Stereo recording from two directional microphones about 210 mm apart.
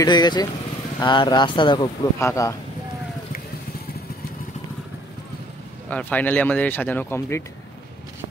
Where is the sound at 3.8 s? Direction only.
45° left (ahead or behind).